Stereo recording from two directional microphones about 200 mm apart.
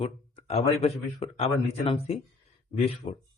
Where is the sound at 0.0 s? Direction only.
30° left (ahead or behind).